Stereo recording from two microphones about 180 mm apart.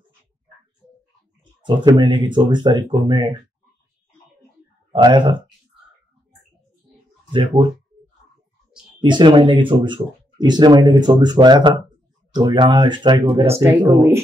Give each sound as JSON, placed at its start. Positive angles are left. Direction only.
{"t": 1.6, "sound": "speech", "side_deg": -25}
{"t": 4.9, "sound": "speech", "side_deg": -25}
{"t": 9.0, "sound": "speech", "side_deg": -25}